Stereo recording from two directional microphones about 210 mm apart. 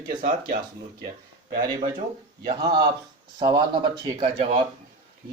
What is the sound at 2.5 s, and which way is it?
Speech, 20° right (ahead or behind).